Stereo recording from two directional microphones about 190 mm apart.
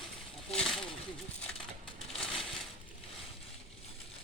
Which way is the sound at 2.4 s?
Centre (ahead or behind).